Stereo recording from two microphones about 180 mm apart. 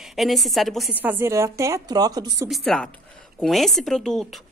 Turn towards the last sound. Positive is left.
turn(degrees=5)  # may be behind; listen again after turning